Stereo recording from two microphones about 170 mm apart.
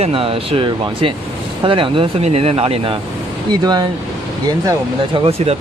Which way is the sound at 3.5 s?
25° right (ahead or behind).